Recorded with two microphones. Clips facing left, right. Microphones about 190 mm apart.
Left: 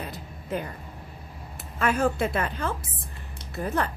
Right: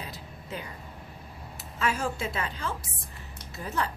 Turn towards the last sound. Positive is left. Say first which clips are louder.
# left 4 dB
turn(degrees=55)  # may be behind; listen again after turning